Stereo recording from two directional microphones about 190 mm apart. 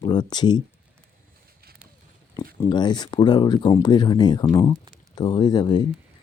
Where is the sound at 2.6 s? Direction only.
20° left (ahead or behind).